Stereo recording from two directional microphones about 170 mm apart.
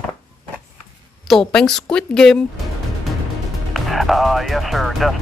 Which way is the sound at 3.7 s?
Centre (ahead or behind).